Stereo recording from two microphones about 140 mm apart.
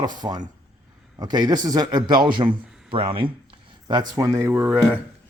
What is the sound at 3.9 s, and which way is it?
Speech, 30° right (ahead or behind).